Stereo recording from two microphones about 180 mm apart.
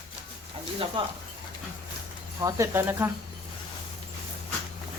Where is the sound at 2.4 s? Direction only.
15° right (ahead or behind).